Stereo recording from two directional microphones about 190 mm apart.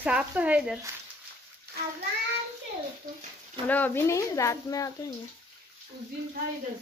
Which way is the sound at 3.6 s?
10° left (ahead or behind).